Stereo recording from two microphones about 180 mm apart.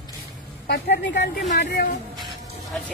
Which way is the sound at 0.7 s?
65° left (ahead or behind).